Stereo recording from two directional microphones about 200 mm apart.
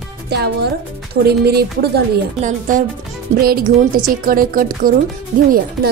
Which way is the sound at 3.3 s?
50° right (ahead or behind).